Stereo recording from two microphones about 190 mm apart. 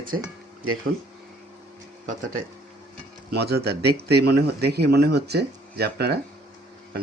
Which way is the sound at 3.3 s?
60° right (ahead or behind).